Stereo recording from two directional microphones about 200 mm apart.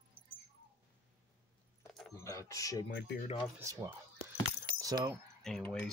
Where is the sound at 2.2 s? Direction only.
15° left (ahead or behind).